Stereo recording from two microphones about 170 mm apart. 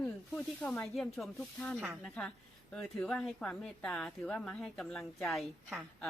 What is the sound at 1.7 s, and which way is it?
Speech, 5° right (ahead or behind).